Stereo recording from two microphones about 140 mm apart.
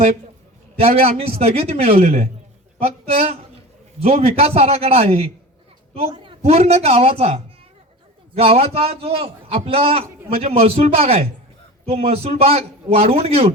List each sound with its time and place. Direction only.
0.8 s a man's voice: 45° right (ahead or behind)